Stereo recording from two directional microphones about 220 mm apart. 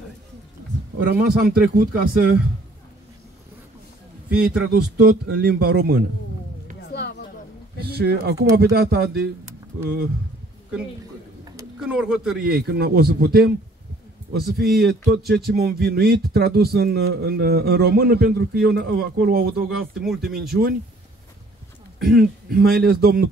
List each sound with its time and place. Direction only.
0.9 s speech: 45° right (ahead or behind)
4.3 s a man's voice: 5° right (ahead or behind)
4.6 s speech: 45° right (ahead or behind)
6.9 s a sound: 50° left (ahead or behind)
7.8 s speech: 45° right (ahead or behind)
11.5 s speech: 5° right (ahead or behind)
12.4 s speech: 45° right (ahead or behind)
19.7 s speech: centre (ahead or behind)
20.4 s speech: 45° right (ahead or behind)
22.0 s speech: 45° right (ahead or behind)